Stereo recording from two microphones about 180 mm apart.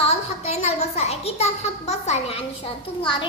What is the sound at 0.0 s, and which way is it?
A child's voice, 35° left (ahead or behind).